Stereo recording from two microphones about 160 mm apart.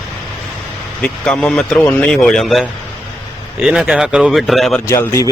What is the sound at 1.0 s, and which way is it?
Speech, 5° left (ahead or behind).